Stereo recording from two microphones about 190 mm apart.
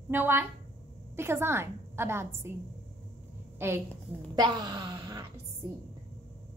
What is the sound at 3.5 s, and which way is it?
A woman's voice, 10° right (ahead or behind).